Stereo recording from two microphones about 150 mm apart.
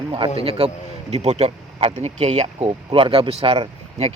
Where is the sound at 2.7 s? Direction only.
35° right (ahead or behind).